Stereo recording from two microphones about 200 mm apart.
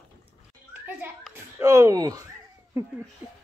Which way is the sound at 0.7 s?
10° right (ahead or behind).